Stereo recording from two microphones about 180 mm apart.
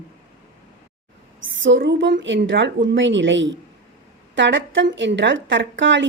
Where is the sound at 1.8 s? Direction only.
80° right.